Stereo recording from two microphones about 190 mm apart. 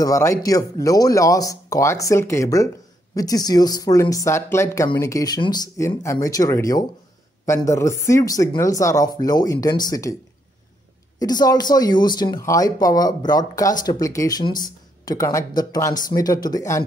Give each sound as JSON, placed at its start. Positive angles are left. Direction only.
{"t": 0.0, "sound": "speech", "side_deg": 15}
{"t": 11.1, "sound": "speech", "side_deg": 20}